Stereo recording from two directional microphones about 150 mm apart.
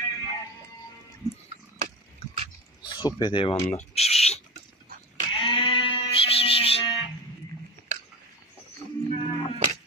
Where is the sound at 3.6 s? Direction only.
45° left (ahead or behind).